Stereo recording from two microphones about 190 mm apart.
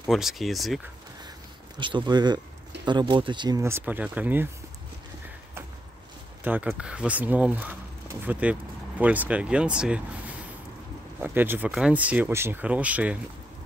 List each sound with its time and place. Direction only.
0.1 s speech: centre (ahead or behind)
1.8 s speech: 25° right (ahead or behind); by 4.5 s 10° right (ahead or behind)
6.4 s speech: 10° right (ahead or behind)
11.1 s speech: 10° right (ahead or behind)